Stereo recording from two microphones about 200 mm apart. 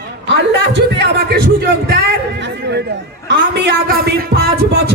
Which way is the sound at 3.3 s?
55° right (ahead or behind).